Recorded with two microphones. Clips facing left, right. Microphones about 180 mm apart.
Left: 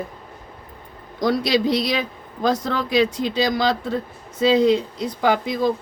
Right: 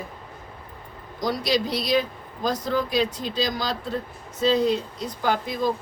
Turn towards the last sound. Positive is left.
turn(degrees=90)